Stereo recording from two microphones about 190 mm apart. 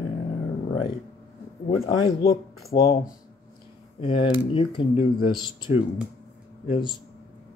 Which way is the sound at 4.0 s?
25° left (ahead or behind).